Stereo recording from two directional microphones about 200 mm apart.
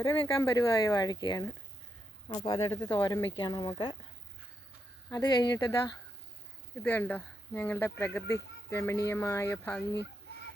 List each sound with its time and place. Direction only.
0.0 s speech: 15° left (ahead or behind)
5.1 s speech: 20° left (ahead or behind)